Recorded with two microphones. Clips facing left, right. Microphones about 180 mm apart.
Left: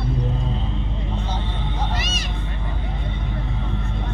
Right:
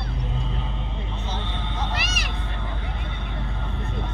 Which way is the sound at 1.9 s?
65° right (ahead or behind).